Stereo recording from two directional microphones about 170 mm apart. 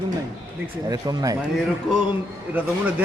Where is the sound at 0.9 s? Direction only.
20° right (ahead or behind).